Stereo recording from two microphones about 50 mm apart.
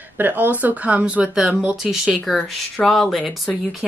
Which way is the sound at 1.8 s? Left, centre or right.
Centre.